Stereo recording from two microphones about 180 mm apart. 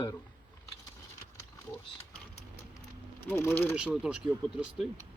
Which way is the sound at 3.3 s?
10° left (ahead or behind).